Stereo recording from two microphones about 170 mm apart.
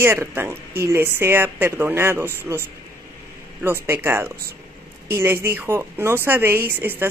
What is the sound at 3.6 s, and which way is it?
A woman's voice, 15° right (ahead or behind).